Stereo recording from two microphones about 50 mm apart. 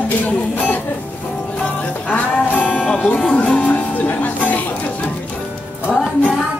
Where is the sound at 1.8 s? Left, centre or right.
Left.